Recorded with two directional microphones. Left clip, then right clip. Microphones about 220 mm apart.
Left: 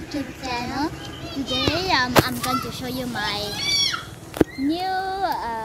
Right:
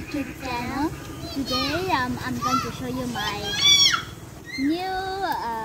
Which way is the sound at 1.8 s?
15° right (ahead or behind).